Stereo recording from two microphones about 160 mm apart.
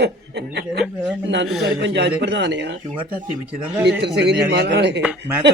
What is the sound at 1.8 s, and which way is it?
Speech, 90° right.